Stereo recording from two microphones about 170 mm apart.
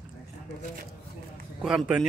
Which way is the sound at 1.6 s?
5° right (ahead or behind).